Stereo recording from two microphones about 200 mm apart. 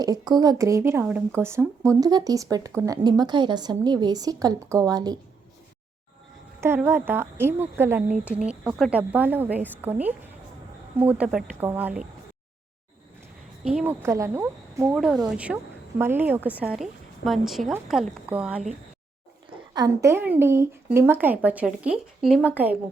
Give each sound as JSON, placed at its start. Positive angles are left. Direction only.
{"t": 0.0, "sound": "speech", "side_deg": -20}
{"t": 6.6, "sound": "speech", "side_deg": -10}
{"t": 13.7, "sound": "speech", "side_deg": -5}
{"t": 14.9, "sound": "a woman's voice", "side_deg": 0}
{"t": 19.7, "sound": "speech", "side_deg": -15}